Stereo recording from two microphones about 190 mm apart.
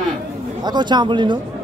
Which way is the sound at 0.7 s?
25° right (ahead or behind).